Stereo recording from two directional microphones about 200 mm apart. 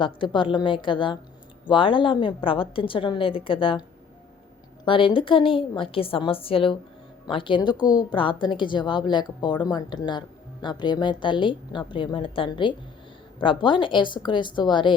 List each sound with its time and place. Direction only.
0.0 s a woman's voice: 25° left (ahead or behind)
4.9 s a woman's voice: 25° left (ahead or behind)